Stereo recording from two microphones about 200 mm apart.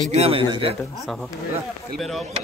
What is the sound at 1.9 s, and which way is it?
Speech, centre (ahead or behind).